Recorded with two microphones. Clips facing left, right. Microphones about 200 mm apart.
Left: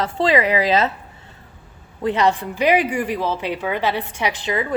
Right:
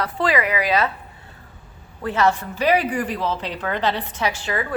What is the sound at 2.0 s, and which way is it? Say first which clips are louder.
A woman's voice: left 2 dB; 15° left (ahead or behind).